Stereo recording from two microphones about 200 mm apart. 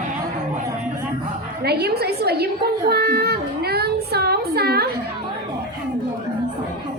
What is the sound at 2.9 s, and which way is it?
Child singing, 50° right (ahead or behind).